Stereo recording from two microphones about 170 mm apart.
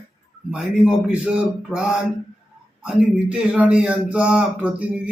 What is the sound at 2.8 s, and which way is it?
Speech, 5° right (ahead or behind).